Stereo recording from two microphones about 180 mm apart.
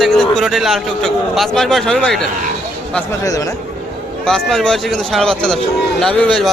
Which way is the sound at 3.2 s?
20° left (ahead or behind).